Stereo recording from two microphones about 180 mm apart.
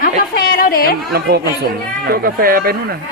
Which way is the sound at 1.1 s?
65° right (ahead or behind).